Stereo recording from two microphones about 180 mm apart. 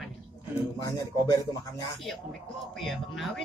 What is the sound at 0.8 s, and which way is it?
Speech, 15° left (ahead or behind).